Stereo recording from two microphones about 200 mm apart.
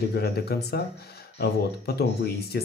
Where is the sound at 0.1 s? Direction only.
50° left (ahead or behind).